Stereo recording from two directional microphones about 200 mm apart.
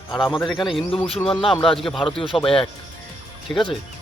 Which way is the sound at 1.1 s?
25° left (ahead or behind).